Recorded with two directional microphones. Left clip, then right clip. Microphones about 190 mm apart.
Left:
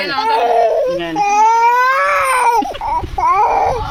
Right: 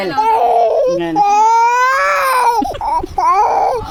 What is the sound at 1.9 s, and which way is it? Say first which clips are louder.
Crying: even; 40° right (ahead or behind).